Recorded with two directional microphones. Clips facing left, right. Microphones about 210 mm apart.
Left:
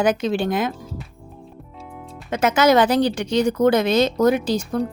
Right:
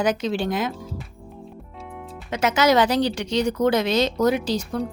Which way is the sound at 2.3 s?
50° left (ahead or behind).